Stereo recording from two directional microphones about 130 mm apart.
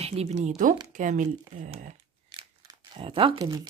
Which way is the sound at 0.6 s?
75° right (ahead or behind).